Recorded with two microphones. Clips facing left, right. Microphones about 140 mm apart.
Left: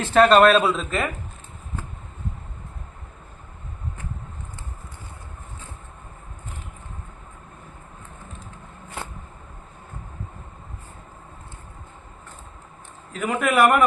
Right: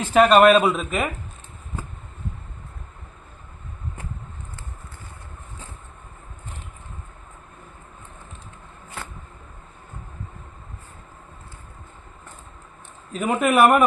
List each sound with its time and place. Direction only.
0.0 s speech: 10° right (ahead or behind)
13.1 s a man's voice: 20° right (ahead or behind)